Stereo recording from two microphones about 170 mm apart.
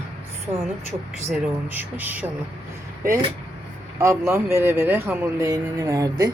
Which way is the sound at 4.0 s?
15° right (ahead or behind).